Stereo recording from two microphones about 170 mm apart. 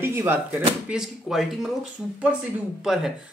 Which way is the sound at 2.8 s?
Centre (ahead or behind).